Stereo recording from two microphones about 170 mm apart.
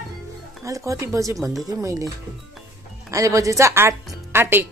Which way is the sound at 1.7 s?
20° right (ahead or behind).